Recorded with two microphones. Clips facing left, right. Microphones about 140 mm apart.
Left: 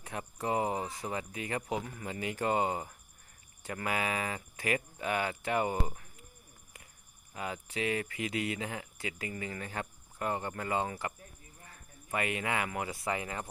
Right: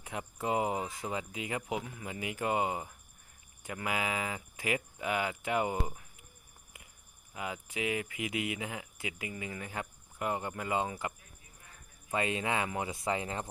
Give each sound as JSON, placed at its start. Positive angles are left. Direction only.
{"t": 0.0, "sound": "a sound", "side_deg": -15}
{"t": 1.0, "sound": "speech", "side_deg": -15}
{"t": 7.3, "sound": "speech", "side_deg": -15}
{"t": 12.1, "sound": "speech", "side_deg": -25}